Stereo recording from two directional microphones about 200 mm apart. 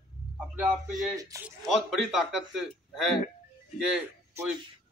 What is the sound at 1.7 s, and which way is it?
A man's voice, centre (ahead or behind).